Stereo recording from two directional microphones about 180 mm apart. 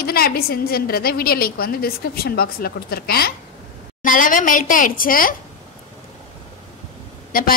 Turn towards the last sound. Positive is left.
turn(degrees=50)  # may be behind; listen again after turning